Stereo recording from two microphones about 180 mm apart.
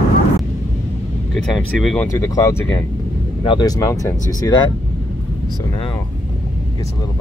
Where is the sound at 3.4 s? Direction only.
25° left (ahead or behind).